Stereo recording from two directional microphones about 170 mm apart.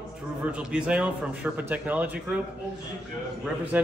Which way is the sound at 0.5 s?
5° right (ahead or behind).